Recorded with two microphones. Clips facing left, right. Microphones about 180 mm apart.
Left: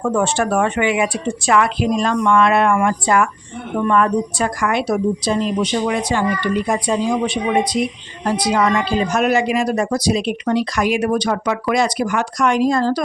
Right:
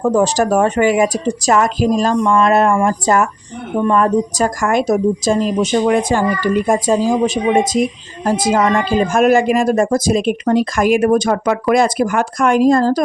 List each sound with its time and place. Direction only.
0.1 s a woman's voice: 35° right (ahead or behind)